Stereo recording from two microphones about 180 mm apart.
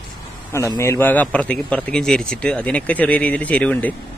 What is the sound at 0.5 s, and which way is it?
A man's voice, 15° left (ahead or behind).